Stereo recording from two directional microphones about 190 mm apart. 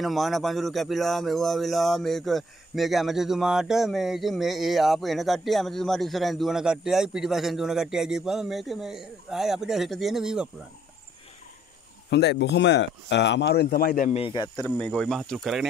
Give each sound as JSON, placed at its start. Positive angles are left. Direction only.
{"t": 0.0, "sound": "speech", "side_deg": 0}
{"t": 12.1, "sound": "speech", "side_deg": 60}
{"t": 14.2, "sound": "speech", "side_deg": 20}
{"t": 14.6, "sound": "speech", "side_deg": 5}